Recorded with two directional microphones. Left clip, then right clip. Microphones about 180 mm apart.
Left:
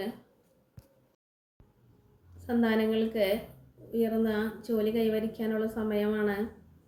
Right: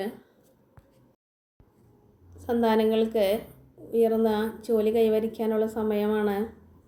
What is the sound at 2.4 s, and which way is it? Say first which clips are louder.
A woman's voice: right 5 dB; 50° right (ahead or behind).